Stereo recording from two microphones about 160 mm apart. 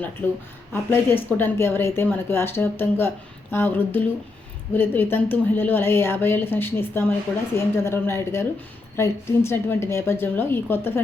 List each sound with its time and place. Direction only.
0.7 s speech: 15° left (ahead or behind)